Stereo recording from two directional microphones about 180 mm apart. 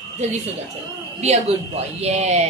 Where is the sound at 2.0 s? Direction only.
35° right (ahead or behind).